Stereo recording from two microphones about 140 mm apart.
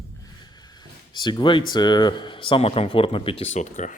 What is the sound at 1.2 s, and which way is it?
Speech, 35° left (ahead or behind).